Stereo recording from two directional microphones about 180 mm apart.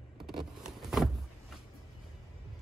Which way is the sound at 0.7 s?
Centre (ahead or behind).